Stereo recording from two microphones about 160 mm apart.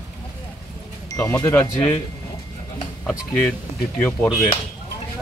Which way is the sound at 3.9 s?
10° left (ahead or behind).